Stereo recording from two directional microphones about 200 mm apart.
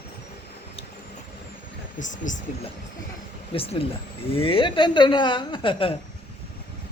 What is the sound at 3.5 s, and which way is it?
A woman's voice, 30° left (ahead or behind).